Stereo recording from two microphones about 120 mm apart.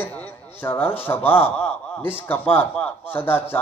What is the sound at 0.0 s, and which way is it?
A man's voice, 15° left (ahead or behind).